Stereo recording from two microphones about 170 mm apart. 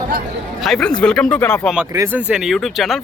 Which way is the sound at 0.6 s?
Centre (ahead or behind).